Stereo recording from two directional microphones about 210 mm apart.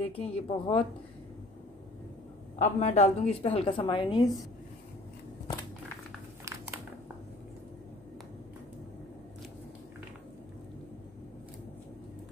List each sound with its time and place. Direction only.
0.0 s a woman's voice: 25° left (ahead or behind)
2.6 s a woman's voice: 35° left (ahead or behind)